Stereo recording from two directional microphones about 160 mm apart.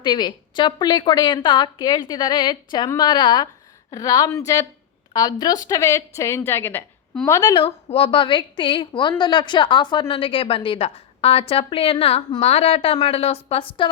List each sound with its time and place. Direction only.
0.0 s a woman's voice: 30° left (ahead or behind)
7.5 s a woman's voice: 35° left (ahead or behind)